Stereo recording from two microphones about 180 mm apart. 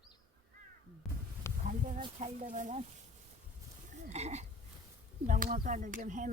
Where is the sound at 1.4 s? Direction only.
15° left (ahead or behind).